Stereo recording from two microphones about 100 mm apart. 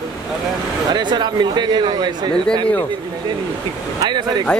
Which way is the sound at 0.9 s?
50° right (ahead or behind).